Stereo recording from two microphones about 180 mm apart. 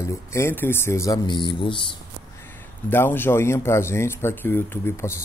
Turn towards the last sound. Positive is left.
turn(degrees=15)  # may be behind; listen again after turning